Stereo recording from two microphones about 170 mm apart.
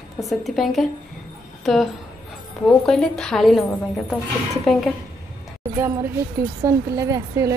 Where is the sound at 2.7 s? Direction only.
5° left (ahead or behind).